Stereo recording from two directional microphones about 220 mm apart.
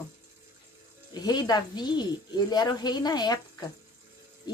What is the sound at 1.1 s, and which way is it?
A woman's voice, 20° left (ahead or behind).